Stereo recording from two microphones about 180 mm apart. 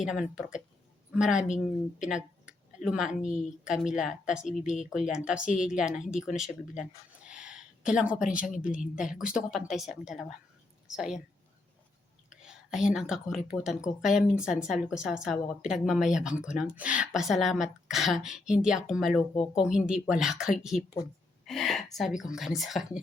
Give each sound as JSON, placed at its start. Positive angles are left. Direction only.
{"t": 0.0, "sound": "speech", "side_deg": -5}
{"t": 2.0, "sound": "a sound", "side_deg": -5}
{"t": 2.8, "sound": "speech", "side_deg": -5}
{"t": 7.3, "sound": "a sound", "side_deg": -5}
{"t": 8.2, "sound": "speech", "side_deg": 50}
{"t": 8.4, "sound": "a woman's voice", "side_deg": -5}
{"t": 12.3, "sound": "speech", "side_deg": -5}
{"t": 21.4, "sound": "a sound", "side_deg": 0}
{"t": 21.9, "sound": "speech", "side_deg": 0}